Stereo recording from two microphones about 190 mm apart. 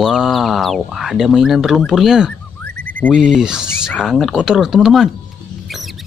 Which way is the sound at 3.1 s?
5° right (ahead or behind).